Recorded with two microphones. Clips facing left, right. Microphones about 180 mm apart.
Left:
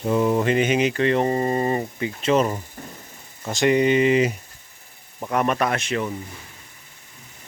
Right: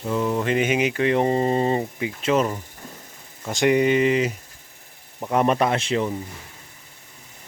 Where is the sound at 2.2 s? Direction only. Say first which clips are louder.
Left 1 dB; centre (ahead or behind).